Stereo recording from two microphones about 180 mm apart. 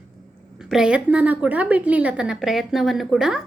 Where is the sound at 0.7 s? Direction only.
5° right (ahead or behind).